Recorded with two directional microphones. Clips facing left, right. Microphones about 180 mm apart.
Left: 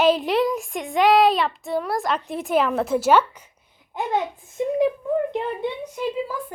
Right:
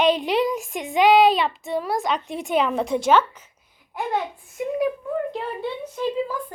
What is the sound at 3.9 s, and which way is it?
A child's voice, 20° left (ahead or behind).